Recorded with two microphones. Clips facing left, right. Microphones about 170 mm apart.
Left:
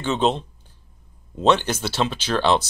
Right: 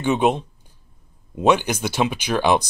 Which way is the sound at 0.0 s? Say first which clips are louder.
Right 2 dB; 15° right (ahead or behind).